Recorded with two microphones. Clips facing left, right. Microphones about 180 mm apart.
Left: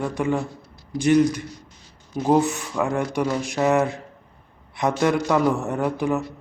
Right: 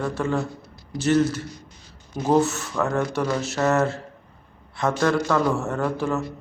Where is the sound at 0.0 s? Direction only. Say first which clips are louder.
Left 1 dB; 15° left (ahead or behind).